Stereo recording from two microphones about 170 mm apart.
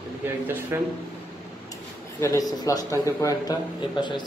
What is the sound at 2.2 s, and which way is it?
A man's voice, 20° left (ahead or behind).